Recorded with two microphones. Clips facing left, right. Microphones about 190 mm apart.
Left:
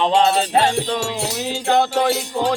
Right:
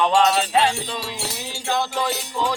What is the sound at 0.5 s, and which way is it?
Wind chime, 50° left (ahead or behind).